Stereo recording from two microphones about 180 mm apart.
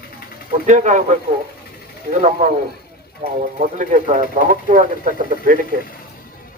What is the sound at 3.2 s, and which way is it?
Speech, 35° right (ahead or behind).